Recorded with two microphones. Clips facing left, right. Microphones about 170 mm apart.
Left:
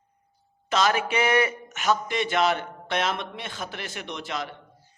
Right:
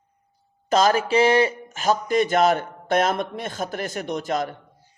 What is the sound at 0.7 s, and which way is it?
A man's voice, 40° right (ahead or behind).